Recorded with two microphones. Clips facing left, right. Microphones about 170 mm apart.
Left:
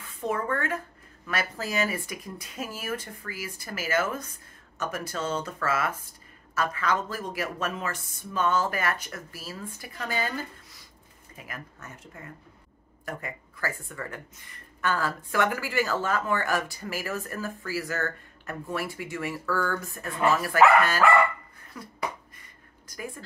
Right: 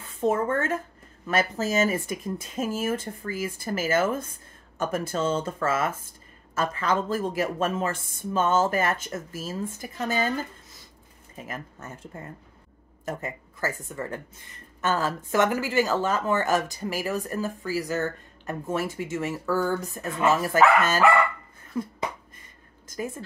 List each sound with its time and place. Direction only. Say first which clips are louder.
0.0 s speech: right 6 dB; 25° right (ahead or behind)
11.3 s speech: right 5 dB; 25° right (ahead or behind)